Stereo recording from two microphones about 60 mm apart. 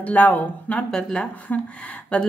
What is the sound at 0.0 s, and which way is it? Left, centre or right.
Speech, left.